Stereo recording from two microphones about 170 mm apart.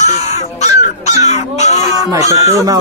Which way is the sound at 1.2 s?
40° left (ahead or behind).